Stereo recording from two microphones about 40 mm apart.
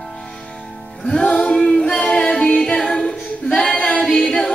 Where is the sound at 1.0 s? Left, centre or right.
Centre.